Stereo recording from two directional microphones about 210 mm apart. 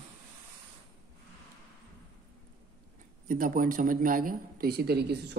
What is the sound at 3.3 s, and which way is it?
Speech, 40° right (ahead or behind).